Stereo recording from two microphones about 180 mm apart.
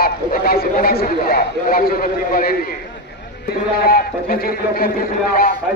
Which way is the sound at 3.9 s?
55° left (ahead or behind).